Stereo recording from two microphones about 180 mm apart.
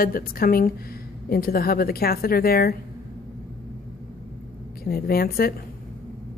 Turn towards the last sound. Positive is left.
turn(degrees=55)  # may be behind; listen again after turning